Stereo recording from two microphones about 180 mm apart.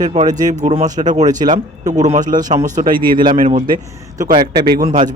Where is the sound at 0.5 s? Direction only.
40° right (ahead or behind).